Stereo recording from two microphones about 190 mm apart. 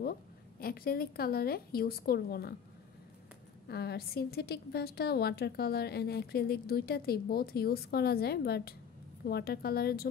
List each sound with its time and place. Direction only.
0.6 s a woman's voice: 50° left (ahead or behind)
3.6 s a woman's voice: 55° left (ahead or behind)